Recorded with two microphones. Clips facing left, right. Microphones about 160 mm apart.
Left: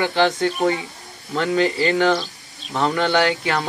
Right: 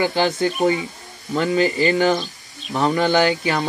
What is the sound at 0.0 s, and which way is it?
A man's voice, 5° right (ahead or behind).